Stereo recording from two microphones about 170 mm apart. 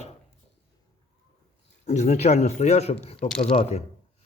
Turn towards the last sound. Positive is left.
turn(degrees=35)  # may be behind; listen again after turning